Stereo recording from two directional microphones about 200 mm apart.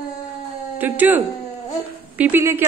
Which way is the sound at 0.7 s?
10° right (ahead or behind).